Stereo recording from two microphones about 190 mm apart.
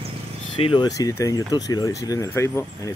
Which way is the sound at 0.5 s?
25° left (ahead or behind).